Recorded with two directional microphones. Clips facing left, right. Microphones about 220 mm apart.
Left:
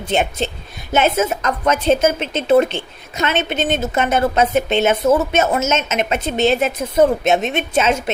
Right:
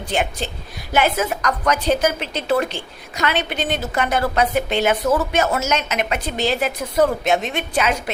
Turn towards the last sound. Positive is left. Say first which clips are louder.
# left 4 dB
turn(degrees=25)  # may be behind; listen again after turning